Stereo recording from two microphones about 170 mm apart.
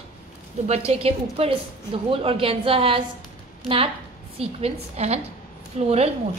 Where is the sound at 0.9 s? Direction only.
35° right (ahead or behind).